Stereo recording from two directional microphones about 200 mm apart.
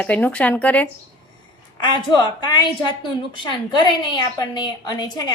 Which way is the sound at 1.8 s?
20° left (ahead or behind).